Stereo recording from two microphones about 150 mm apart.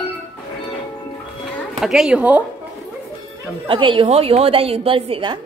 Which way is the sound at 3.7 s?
35° right (ahead or behind).